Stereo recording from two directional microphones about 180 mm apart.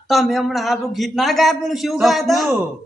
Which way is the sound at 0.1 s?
Centre (ahead or behind).